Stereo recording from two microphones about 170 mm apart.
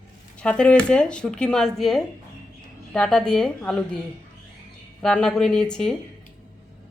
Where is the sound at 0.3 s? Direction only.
5° left (ahead or behind).